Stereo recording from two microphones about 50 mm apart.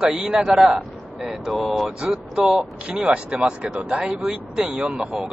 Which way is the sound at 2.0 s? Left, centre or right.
Centre.